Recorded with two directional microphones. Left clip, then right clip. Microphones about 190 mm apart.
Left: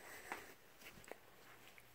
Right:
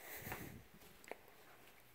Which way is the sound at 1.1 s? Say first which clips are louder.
Right 5 dB; 25° right (ahead or behind).